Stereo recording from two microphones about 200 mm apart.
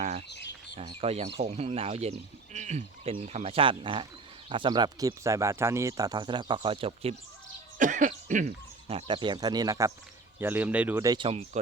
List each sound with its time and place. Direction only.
0.0 s bird: 35° right (ahead or behind)
0.8 s speech: 30° right (ahead or behind)
7.8 s speech: 40° right (ahead or behind)